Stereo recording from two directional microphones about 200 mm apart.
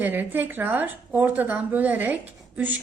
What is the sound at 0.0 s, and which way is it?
Speech, 10° right (ahead or behind).